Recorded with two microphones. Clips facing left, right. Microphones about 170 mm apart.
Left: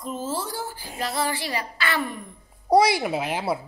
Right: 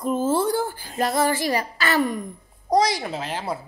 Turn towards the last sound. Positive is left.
turn(degrees=10)  # may be behind; listen again after turning